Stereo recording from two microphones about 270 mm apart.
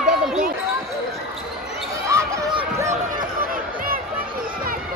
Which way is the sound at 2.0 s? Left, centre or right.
Centre.